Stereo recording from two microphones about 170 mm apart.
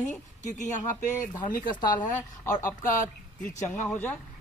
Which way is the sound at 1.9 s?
50° left (ahead or behind).